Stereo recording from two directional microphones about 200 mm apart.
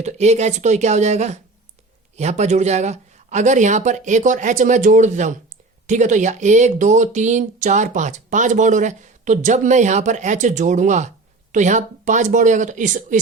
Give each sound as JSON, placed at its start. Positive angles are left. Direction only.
{"t": 0.0, "sound": "speech", "side_deg": -35}